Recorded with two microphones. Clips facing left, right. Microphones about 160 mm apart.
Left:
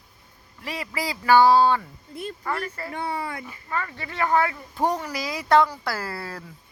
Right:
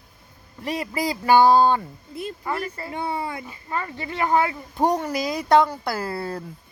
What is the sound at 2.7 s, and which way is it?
Speech, 25° right (ahead or behind).